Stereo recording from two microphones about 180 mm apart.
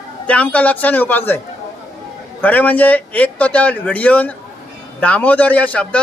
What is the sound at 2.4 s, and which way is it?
A man's voice, 10° left (ahead or behind).